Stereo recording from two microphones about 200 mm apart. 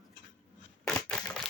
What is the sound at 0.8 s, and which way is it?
Crushing, 5° left (ahead or behind).